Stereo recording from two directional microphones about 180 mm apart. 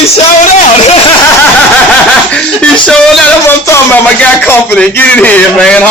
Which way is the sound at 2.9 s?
5° left (ahead or behind).